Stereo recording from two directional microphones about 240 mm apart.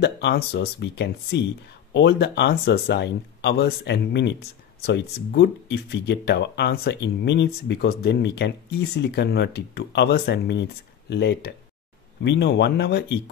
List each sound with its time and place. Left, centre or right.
0.0 s speech: left